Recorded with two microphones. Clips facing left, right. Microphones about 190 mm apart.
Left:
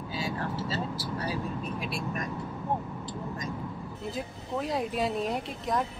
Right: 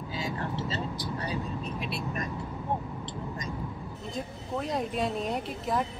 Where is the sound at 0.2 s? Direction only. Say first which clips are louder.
Even; 5° left (ahead or behind).